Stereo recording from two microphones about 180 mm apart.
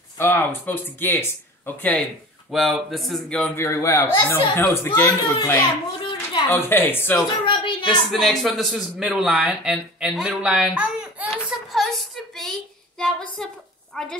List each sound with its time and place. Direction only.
0.2 s a man's voice: 10° left (ahead or behind)
2.5 s a man's voice: centre (ahead or behind)
7.4 s a sound: 25° left (ahead or behind)
8.1 s speech: centre (ahead or behind)
11.2 s a sound: centre (ahead or behind)
13.9 s a woman's voice: 5° left (ahead or behind)